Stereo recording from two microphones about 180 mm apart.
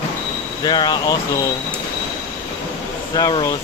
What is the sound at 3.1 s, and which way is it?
Speech, 20° left (ahead or behind).